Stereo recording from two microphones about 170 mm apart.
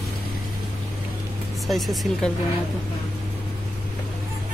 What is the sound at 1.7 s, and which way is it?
Speech, centre (ahead or behind).